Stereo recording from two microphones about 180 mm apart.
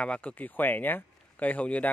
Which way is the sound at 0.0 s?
5° left (ahead or behind).